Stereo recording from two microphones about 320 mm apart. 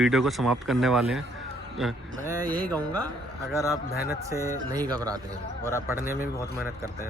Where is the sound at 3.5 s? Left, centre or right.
Centre.